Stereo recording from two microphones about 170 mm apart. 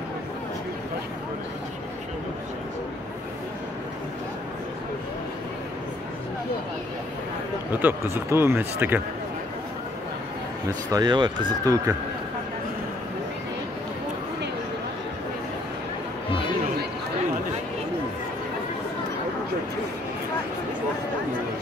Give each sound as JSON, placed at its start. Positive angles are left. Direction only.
{"t": 7.7, "sound": "speech", "side_deg": -15}
{"t": 10.9, "sound": "speech", "side_deg": -25}